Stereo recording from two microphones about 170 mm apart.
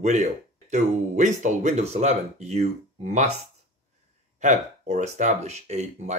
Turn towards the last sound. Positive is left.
turn(degrees=-40)  # may be behind; listen again after turning